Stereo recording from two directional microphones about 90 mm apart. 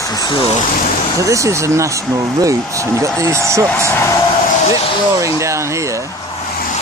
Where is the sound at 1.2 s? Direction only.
35° right (ahead or behind).